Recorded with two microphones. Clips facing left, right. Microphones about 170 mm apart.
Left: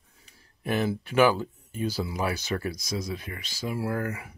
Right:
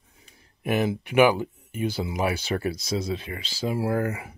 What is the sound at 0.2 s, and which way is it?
Speech, 20° right (ahead or behind).